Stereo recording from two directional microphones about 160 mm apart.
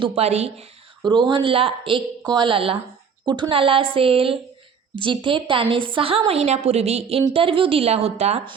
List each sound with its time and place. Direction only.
0.0 s a woman's voice: 40° right (ahead or behind)
1.0 s a woman's voice: 30° right (ahead or behind)